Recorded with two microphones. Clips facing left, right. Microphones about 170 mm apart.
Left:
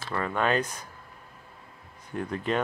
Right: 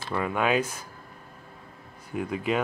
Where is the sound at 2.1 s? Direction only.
5° right (ahead or behind).